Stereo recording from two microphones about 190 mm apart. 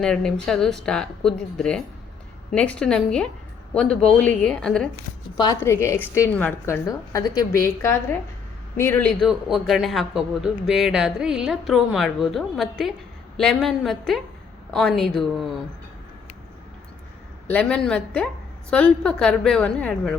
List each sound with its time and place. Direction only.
0.0 s a man's voice: 5° left (ahead or behind)
17.5 s a man's voice: 5° left (ahead or behind)